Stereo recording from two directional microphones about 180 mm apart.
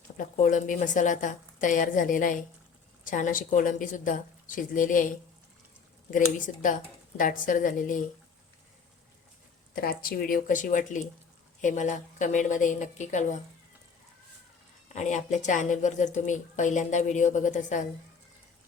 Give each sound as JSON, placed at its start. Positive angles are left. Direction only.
{"t": 0.2, "sound": "a woman's voice", "side_deg": 45}
{"t": 9.7, "sound": "a woman's voice", "side_deg": 55}
{"t": 14.9, "sound": "a woman's voice", "side_deg": 40}